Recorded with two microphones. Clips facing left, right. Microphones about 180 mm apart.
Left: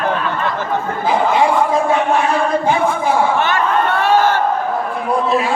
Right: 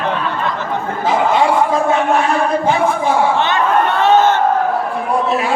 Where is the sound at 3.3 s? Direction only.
20° right (ahead or behind).